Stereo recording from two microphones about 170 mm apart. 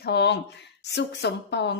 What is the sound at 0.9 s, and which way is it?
Speech, 85° left.